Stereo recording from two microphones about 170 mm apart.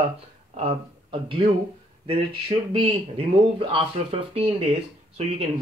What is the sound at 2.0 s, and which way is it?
Speech, 35° right (ahead or behind).